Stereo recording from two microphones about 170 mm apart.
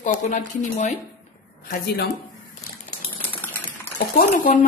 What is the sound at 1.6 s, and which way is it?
Speech, 65° left (ahead or behind).